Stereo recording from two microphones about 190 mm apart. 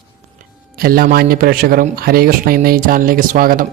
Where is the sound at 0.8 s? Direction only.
50° right (ahead or behind).